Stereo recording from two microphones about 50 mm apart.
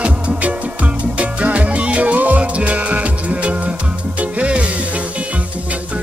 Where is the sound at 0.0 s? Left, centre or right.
Right.